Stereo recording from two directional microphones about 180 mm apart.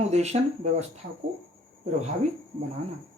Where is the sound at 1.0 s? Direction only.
55° right (ahead or behind).